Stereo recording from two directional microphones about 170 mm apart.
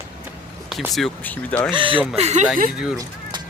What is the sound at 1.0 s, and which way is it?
Speech, 5° left (ahead or behind).